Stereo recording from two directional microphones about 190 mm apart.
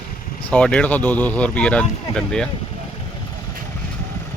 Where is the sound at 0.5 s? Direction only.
5° left (ahead or behind).